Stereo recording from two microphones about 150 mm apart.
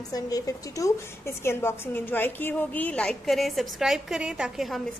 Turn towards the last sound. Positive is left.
turn(degrees=0)  # may be behind; listen again after turning